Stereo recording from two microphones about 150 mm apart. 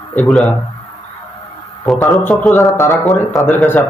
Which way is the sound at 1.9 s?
Centre (ahead or behind).